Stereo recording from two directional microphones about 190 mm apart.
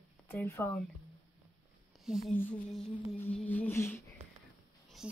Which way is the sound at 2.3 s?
5° left (ahead or behind).